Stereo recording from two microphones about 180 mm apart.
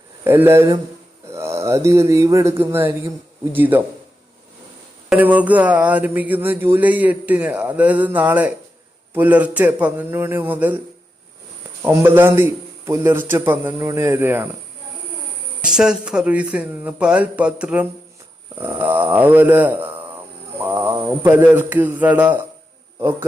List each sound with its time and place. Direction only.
0.3 s speech: 10° right (ahead or behind)
5.0 s speech: 10° right (ahead or behind)
11.8 s speech: 10° right (ahead or behind)
15.6 s speech: 5° right (ahead or behind)